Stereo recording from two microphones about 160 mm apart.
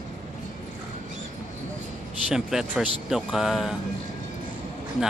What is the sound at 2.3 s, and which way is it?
Speech, 5° right (ahead or behind).